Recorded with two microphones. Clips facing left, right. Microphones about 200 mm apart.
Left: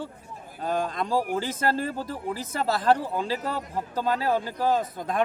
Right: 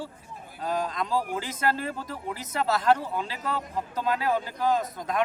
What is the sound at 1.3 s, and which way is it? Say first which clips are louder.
Speech: left 2 dB; 30° left (ahead or behind).